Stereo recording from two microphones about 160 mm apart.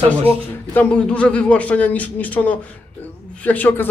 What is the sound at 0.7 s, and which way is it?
Speech, 5° left (ahead or behind).